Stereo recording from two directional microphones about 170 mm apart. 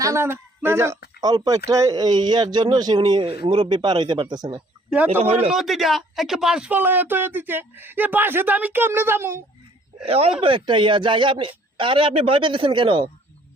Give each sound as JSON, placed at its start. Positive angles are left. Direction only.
{"t": 0.0, "sound": "speech", "side_deg": -15}
{"t": 5.2, "sound": "speech", "side_deg": -35}
{"t": 5.5, "sound": "speech", "side_deg": 0}
{"t": 10.1, "sound": "speech", "side_deg": -35}